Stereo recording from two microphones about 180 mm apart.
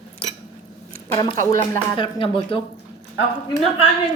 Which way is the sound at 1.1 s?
20° left (ahead or behind).